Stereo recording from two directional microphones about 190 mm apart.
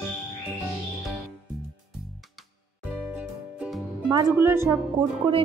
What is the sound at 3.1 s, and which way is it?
Music, 5° right (ahead or behind).